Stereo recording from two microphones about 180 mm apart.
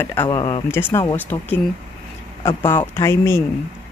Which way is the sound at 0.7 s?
15° left (ahead or behind).